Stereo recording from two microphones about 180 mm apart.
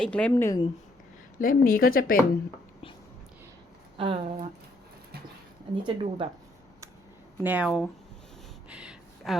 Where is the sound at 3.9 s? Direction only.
30° right (ahead or behind).